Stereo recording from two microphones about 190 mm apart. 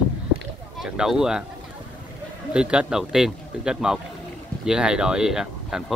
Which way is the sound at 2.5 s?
5° right (ahead or behind).